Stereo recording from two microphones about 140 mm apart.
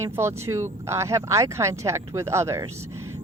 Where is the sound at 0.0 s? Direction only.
20° right (ahead or behind).